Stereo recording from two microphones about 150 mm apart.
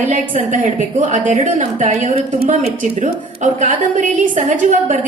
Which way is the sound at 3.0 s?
55° right (ahead or behind).